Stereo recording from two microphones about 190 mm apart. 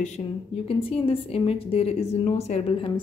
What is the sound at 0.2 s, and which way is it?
A woman's voice, 25° left (ahead or behind).